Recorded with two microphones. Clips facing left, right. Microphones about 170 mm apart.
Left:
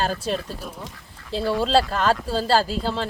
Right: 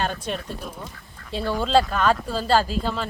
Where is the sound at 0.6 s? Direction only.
5° left (ahead or behind).